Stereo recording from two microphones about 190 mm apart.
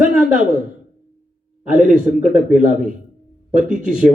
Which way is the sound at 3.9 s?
5° right (ahead or behind).